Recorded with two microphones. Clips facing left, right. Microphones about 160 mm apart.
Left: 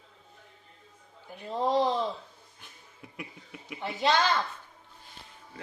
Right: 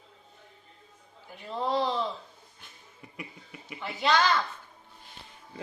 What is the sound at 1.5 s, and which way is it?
Speech, 20° left (ahead or behind).